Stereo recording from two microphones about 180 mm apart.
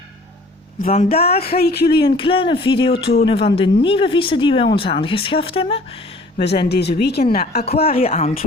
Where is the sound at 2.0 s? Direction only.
30° left (ahead or behind).